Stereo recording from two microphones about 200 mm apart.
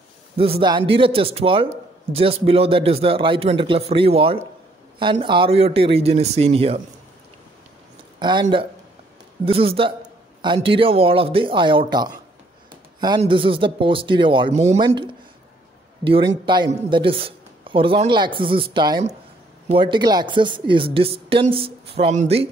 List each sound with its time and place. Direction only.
0.4 s a man's voice: 25° right (ahead or behind)
8.2 s a man's voice: 20° right (ahead or behind)
13.2 s a man's voice: 25° right (ahead or behind)